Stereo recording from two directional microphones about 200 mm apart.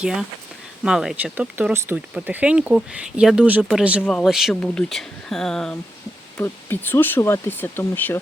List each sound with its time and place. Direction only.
0.0 s speech: 5° right (ahead or behind)